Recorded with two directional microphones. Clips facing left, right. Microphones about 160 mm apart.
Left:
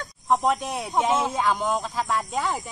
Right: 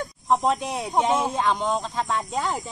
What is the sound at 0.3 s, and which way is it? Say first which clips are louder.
Speech: even; centre (ahead or behind).